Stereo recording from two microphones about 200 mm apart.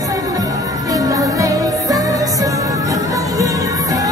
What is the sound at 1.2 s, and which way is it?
Music, 15° right (ahead or behind).